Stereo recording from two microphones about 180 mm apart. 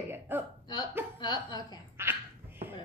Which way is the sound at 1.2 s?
25° left (ahead or behind).